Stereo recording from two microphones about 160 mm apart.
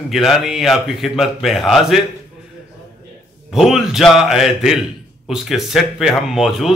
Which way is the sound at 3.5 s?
Centre (ahead or behind).